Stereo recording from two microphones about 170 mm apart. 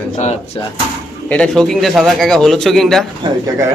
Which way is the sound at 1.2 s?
5° left (ahead or behind).